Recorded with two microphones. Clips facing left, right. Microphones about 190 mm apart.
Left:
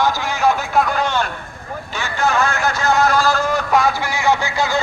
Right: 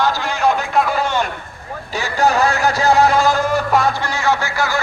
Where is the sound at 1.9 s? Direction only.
35° right (ahead or behind).